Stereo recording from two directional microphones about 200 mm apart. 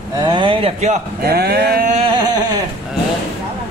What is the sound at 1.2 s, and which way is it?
Speech, 50° right (ahead or behind).